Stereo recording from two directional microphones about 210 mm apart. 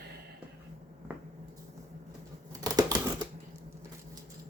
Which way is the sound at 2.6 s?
15° right (ahead or behind).